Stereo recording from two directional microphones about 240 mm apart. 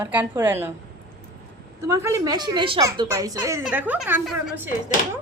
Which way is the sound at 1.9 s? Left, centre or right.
Centre.